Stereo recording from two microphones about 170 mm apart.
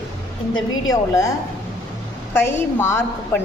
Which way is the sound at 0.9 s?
20° left (ahead or behind).